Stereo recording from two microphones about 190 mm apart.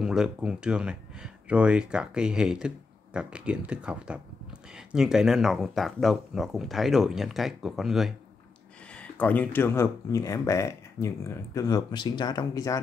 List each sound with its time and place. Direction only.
0.0 s speech: 5° right (ahead or behind); by 12.8 s 20° left (ahead or behind)